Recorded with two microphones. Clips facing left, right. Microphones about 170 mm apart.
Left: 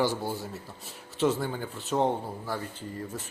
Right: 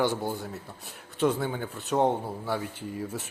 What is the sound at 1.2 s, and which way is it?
A man's voice, centre (ahead or behind).